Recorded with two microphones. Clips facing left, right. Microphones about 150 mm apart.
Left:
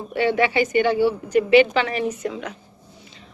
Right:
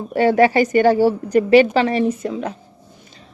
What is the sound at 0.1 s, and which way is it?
A woman's voice, 40° right (ahead or behind).